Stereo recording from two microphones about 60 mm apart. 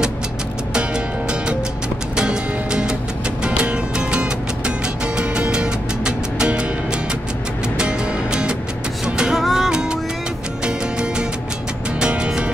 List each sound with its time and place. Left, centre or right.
0.7 s music: centre
7.7 s music: centre
9.4 s music: centre
9.7 s music: centre